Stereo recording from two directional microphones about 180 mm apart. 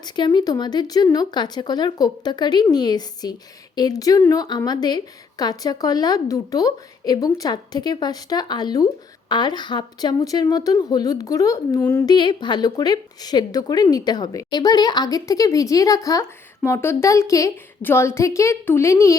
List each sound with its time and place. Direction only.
0.0 s a woman's voice: 25° left (ahead or behind)
12.1 s a woman's voice: 25° left (ahead or behind)